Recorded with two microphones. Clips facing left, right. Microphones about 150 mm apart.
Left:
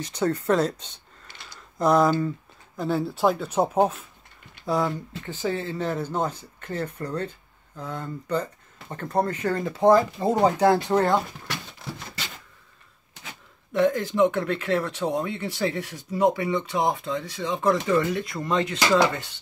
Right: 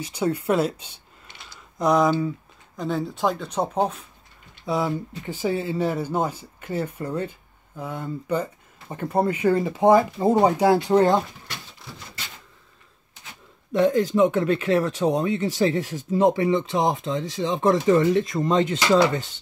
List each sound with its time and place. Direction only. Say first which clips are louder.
0.0 s speech: right 1 dB; 10° right (ahead or behind)
1.4 s a sound: even; centre (ahead or behind)
2.8 s speech: left 1 dB; 5° left (ahead or behind); by 11.1 s 10° right (ahead or behind)
13.7 s speech: right 2 dB; 15° right (ahead or behind)
15.1 s speech: right 5 dB; 30° right (ahead or behind)